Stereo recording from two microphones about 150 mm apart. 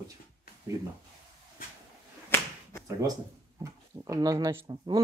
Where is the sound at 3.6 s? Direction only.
25° right (ahead or behind).